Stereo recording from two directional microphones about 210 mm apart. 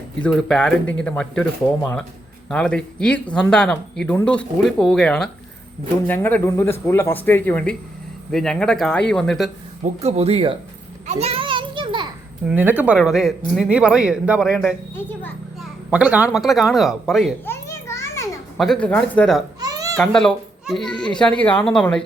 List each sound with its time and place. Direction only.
0.2 s speech: centre (ahead or behind)
2.5 s speech: 5° left (ahead or behind)
9.8 s speech: 30° right (ahead or behind)
11.0 s children playing: 30° right (ahead or behind)
12.5 s speech: 5° right (ahead or behind)
17.4 s children playing: 10° left (ahead or behind)
18.5 s speech: centre (ahead or behind)
19.5 s babbling: 15° right (ahead or behind)
20.0 s speech: 5° left (ahead or behind)